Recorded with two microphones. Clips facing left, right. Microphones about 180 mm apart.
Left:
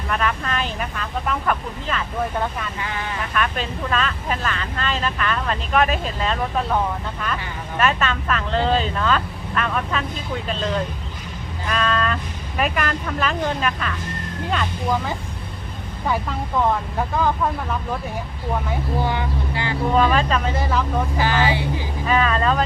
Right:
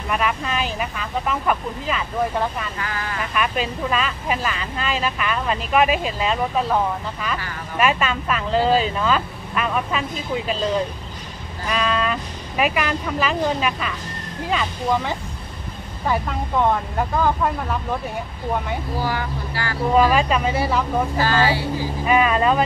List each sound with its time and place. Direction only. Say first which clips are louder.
0.1 s speech: right 1 dB; 10° right (ahead or behind)
2.8 s speech: left 1 dB; 20° left (ahead or behind)
3.3 s speech: right 2 dB; 10° right (ahead or behind)
11.7 s speech: even; 5° right (ahead or behind)
17.2 s speech: even; centre (ahead or behind)
18.9 s speech: left 2 dB; 20° left (ahead or behind)
19.9 s speech: right 2 dB; 5° right (ahead or behind)
21.2 s speech: even; 15° left (ahead or behind)
22.0 s speech: right 2 dB; 15° right (ahead or behind)